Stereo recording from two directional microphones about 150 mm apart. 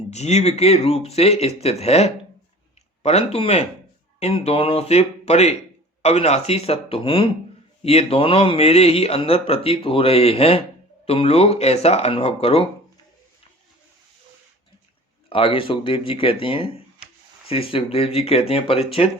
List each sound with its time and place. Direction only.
0.1 s speech: 45° left (ahead or behind)
15.3 s speech: 35° left (ahead or behind)